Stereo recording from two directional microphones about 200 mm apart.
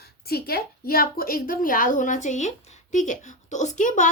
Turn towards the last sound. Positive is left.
turn(degrees=40)  # may be behind; listen again after turning